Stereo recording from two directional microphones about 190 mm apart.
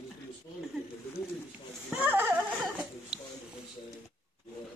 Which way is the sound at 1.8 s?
10° right (ahead or behind).